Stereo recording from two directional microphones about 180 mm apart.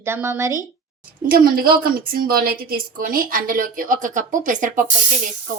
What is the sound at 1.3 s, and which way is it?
A woman's voice, 55° right (ahead or behind).